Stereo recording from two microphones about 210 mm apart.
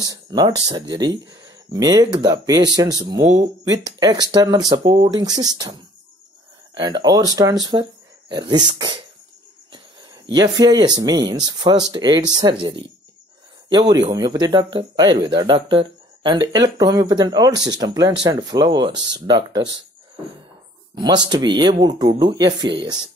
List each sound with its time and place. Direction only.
0.0 s speech: 20° right (ahead or behind)
10.3 s speech: 20° right (ahead or behind)
20.9 s speech: 20° right (ahead or behind)